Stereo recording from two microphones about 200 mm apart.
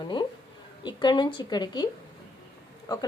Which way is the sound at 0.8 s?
25° left (ahead or behind).